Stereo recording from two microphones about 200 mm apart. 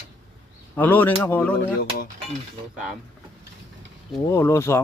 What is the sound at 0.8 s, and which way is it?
Speech, 10° left (ahead or behind).